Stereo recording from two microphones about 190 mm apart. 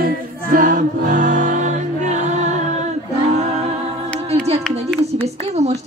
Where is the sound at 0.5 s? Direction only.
45° right (ahead or behind).